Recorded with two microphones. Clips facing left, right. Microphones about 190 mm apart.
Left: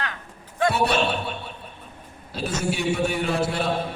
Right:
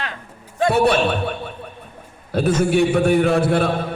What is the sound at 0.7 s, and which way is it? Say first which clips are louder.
A man's voice: right 7 dB; 55° right (ahead or behind).